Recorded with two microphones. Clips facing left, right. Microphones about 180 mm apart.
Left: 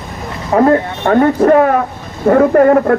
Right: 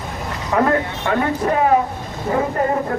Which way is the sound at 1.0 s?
55° left (ahead or behind).